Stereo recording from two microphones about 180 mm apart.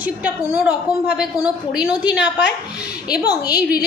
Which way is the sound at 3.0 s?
60° left (ahead or behind).